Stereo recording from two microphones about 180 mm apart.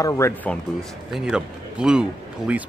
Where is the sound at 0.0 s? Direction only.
15° left (ahead or behind).